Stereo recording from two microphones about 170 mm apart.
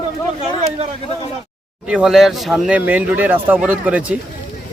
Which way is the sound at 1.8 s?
5° right (ahead or behind).